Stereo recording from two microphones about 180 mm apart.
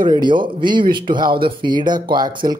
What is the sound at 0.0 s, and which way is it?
Speech, 25° right (ahead or behind).